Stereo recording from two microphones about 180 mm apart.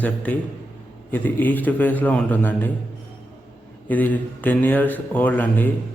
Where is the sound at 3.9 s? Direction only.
10° left (ahead or behind).